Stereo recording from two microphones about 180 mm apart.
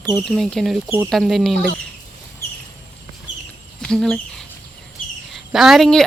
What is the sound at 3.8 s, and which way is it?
Speech, 5° left (ahead or behind).